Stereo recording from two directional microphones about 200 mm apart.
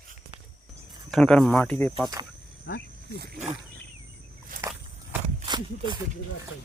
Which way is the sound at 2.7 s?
55° left (ahead or behind).